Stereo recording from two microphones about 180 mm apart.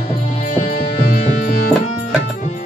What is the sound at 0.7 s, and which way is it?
Music, 60° left (ahead or behind).